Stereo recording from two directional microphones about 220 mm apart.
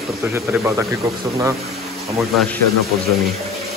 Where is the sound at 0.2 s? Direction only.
10° right (ahead or behind).